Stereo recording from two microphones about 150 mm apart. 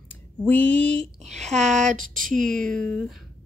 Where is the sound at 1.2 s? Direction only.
50° right (ahead or behind).